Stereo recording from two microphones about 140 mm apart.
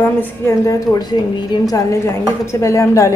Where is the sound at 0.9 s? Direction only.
30° left (ahead or behind).